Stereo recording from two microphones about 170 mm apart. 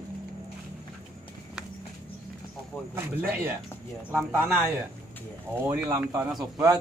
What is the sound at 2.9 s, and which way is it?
Speech, 15° right (ahead or behind).